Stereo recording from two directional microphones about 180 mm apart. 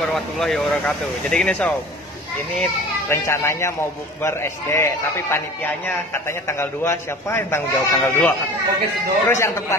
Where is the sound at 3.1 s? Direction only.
15° left (ahead or behind).